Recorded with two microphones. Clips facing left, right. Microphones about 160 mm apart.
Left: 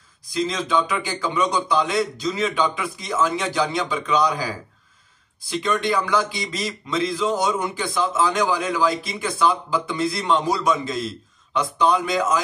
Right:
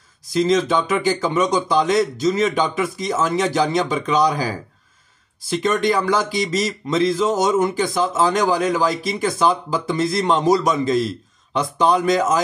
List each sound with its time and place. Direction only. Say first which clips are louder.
0.4 s a man's voice: right 5 dB; 40° right (ahead or behind)